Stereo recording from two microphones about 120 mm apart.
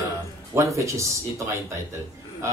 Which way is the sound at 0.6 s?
25° right (ahead or behind).